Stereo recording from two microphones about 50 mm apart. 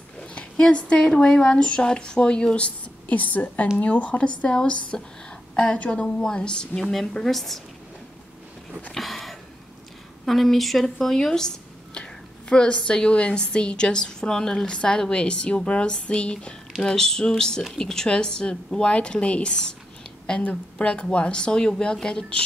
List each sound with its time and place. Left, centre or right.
0.3 s speech: left
4.5 s speech: centre
6.8 s a woman's voice: centre
8.9 s a sound: centre
10.2 s speech: centre; by 16.5 s left
16.8 s speech: centre
20.7 s speech: left